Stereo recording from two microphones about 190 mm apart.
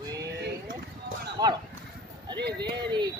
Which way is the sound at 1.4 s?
20° right (ahead or behind).